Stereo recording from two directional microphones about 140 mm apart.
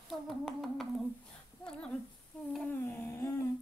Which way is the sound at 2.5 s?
10° left (ahead or behind).